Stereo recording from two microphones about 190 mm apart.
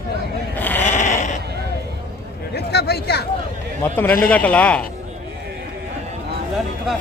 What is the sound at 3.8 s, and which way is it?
A man's voice, 10° left (ahead or behind).